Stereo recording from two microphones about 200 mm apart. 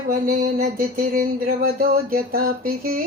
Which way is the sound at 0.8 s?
45° right (ahead or behind).